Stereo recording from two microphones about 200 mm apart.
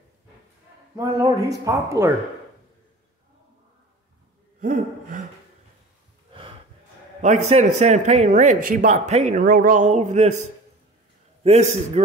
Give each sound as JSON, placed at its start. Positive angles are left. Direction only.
{"t": 0.9, "sound": "speech", "side_deg": -15}
{"t": 4.6, "sound": "gasp", "side_deg": -45}
{"t": 7.2, "sound": "a man's voice", "side_deg": -35}
{"t": 11.4, "sound": "a man's voice", "side_deg": -30}